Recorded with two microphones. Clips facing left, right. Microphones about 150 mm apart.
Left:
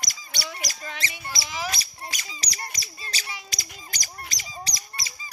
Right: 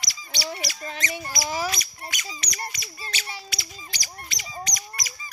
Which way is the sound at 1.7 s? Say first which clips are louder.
Right 1 dB; 30° left (ahead or behind).